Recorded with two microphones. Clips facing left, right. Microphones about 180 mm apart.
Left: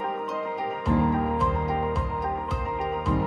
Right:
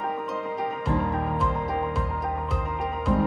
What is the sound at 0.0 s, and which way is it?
Music, centre (ahead or behind).